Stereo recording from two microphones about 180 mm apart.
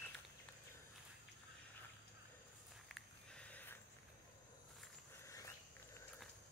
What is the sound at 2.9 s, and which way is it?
Sniff, 5° left (ahead or behind).